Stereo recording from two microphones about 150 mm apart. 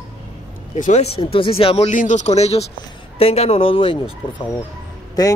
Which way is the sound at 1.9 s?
55° left (ahead or behind).